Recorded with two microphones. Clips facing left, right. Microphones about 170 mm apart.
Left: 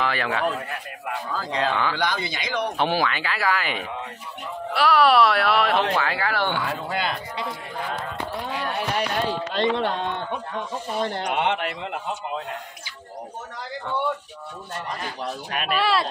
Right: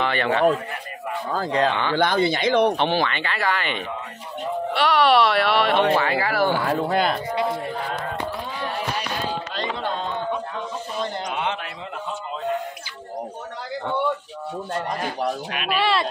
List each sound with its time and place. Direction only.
0.0 s speech: centre (ahead or behind)
1.3 s speech: 50° right (ahead or behind)
2.8 s speech: 5° left (ahead or behind)
6.6 s speech: 45° right (ahead or behind)
9.5 s a sound: 65° left (ahead or behind)
11.0 s a man's voice: 65° left (ahead or behind)
15.7 s speech: centre (ahead or behind)